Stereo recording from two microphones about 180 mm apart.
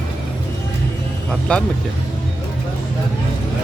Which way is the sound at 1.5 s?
5° left (ahead or behind).